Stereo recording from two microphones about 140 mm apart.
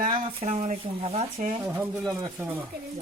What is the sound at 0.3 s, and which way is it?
Speech, 50° right (ahead or behind).